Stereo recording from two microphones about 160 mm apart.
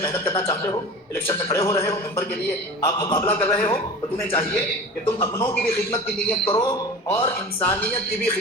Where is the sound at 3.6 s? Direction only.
15° left (ahead or behind).